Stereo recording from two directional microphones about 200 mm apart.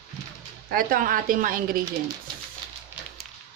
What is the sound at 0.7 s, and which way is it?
Speech, 45° right (ahead or behind).